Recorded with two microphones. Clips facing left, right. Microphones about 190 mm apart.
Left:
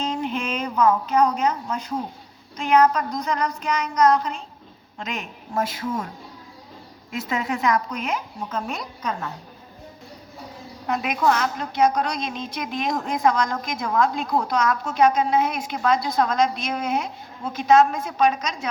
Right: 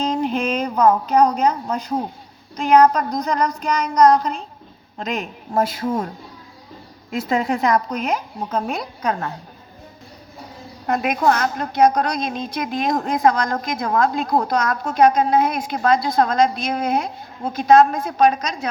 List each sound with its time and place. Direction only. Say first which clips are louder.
0.0 s a sound: right 5 dB; 35° right (ahead or behind)
1.0 s a woman's voice: right 4 dB; 35° right (ahead or behind)
7.1 s a woman's voice: right 6 dB; 35° right (ahead or behind)
10.8 s a woman's voice: right 3 dB; 50° right (ahead or behind)